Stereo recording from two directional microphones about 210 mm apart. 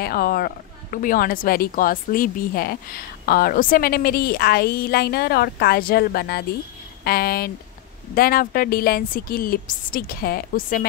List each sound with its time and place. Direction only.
0.0 s a woman's voice: 45° left (ahead or behind)